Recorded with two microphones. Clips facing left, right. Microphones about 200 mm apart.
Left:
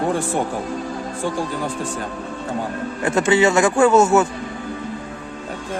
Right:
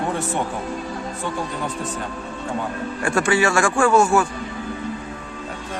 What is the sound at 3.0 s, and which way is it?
Speech, 20° left (ahead or behind).